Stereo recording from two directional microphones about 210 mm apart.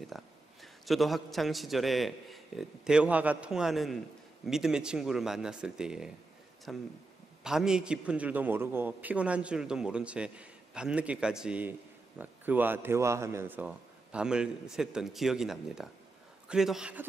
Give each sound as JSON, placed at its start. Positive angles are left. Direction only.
{"t": 0.0, "sound": "a man's voice", "side_deg": 0}